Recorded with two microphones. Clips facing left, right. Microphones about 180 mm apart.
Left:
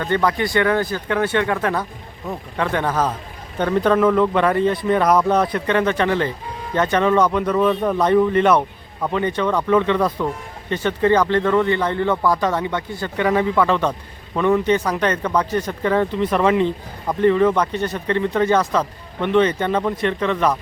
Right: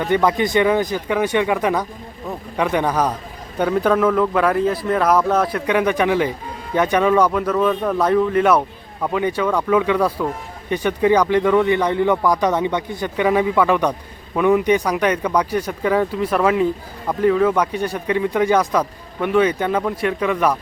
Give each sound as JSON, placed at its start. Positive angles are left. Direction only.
{"t": 0.0, "sound": "speech", "side_deg": -15}